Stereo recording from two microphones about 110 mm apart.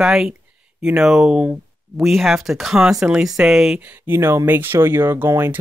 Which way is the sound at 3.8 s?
20° right (ahead or behind).